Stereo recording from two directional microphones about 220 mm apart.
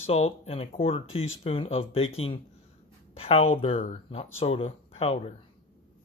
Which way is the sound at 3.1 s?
25° left (ahead or behind).